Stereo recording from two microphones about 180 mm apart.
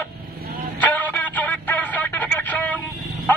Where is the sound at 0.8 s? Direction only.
10° left (ahead or behind).